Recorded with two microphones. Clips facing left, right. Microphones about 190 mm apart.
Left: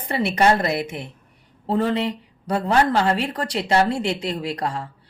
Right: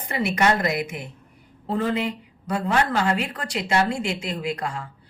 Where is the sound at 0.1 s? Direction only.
35° left (ahead or behind).